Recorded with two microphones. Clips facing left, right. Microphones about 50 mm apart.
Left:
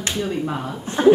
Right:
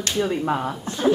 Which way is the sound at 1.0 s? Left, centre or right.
Left.